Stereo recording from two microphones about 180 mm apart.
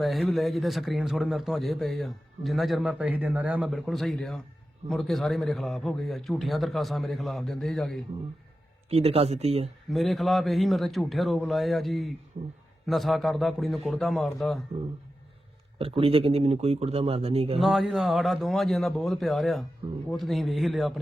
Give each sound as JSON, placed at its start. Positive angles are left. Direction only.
{"t": 0.0, "sound": "a man's voice", "side_deg": 0}
{"t": 8.9, "sound": "speech", "side_deg": -35}
{"t": 9.9, "sound": "a man's voice", "side_deg": 0}
{"t": 12.4, "sound": "speech", "side_deg": -40}
{"t": 12.8, "sound": "a man's voice", "side_deg": 0}
{"t": 15.8, "sound": "speech", "side_deg": -30}
{"t": 17.6, "sound": "a man's voice", "side_deg": 0}